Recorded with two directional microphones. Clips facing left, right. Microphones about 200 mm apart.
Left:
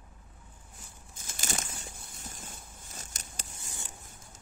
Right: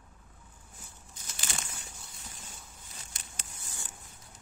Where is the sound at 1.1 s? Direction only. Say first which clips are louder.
Left 4 dB; 45° left (ahead or behind).